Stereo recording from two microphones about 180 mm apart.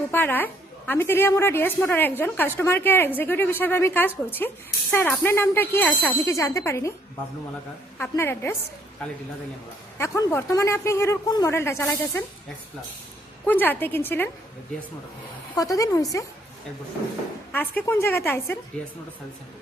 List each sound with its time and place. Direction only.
0.1 s a woman's voice: 10° left (ahead or behind)
7.9 s a woman's voice: 15° left (ahead or behind)
10.0 s a woman's voice: 15° left (ahead or behind)
13.4 s a woman's voice: 10° left (ahead or behind)
15.5 s speech: 20° left (ahead or behind)
17.5 s a woman's voice: 10° left (ahead or behind)